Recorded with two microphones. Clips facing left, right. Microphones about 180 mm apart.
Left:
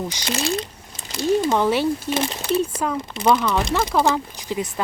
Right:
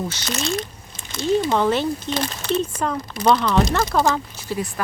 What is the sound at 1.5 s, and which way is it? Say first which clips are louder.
Speech: left 1 dB; 10° left (ahead or behind).